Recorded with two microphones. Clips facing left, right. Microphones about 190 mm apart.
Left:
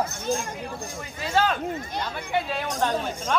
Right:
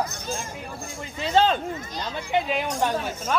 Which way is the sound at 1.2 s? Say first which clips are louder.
Right 3 dB; 25° right (ahead or behind).